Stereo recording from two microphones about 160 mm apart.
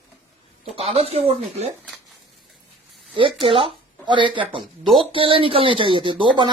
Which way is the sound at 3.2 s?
30° right (ahead or behind).